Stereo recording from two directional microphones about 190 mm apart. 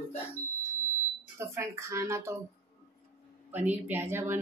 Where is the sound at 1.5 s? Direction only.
15° right (ahead or behind).